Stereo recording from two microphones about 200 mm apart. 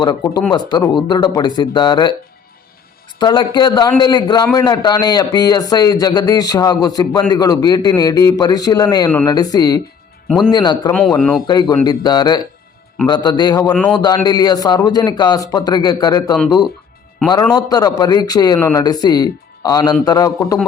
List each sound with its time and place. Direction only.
0.0 s a man's voice: 20° left (ahead or behind)
3.2 s a man's voice: 20° left (ahead or behind)
10.2 s speech: centre (ahead or behind)
10.5 s a man's voice: 20° left (ahead or behind)
17.5 s a man's voice: 20° left (ahead or behind)